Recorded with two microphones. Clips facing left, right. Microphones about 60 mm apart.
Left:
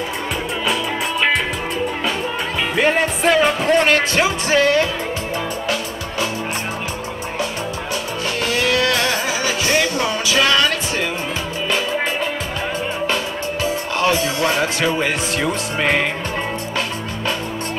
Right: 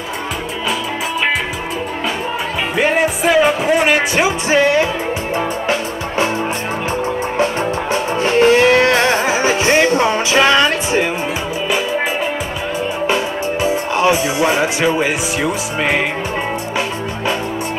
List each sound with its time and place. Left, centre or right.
2.7 s music: centre
7.9 s music: right
13.0 s music: right
15.4 s music: centre